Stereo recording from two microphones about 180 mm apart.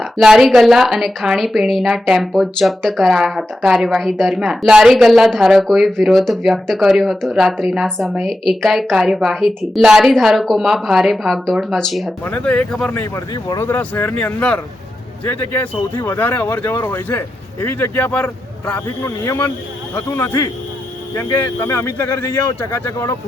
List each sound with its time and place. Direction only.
0.0 s a woman's voice: 5° right (ahead or behind); by 23.1 s 15° left (ahead or behind)